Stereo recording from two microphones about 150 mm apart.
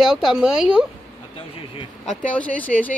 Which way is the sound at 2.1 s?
10° left (ahead or behind).